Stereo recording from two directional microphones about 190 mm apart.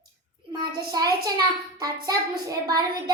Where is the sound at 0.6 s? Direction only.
20° right (ahead or behind).